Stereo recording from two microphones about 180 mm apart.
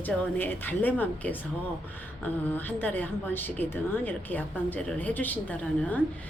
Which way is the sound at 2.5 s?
10° left (ahead or behind).